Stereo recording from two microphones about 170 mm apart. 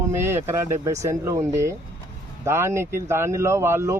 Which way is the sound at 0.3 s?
15° right (ahead or behind).